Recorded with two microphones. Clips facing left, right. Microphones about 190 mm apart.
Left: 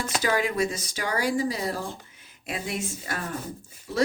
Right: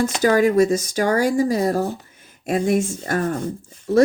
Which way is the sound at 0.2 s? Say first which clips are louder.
Right 9 dB; 45° right (ahead or behind).